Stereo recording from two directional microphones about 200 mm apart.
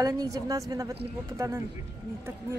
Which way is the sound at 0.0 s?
15° right (ahead or behind).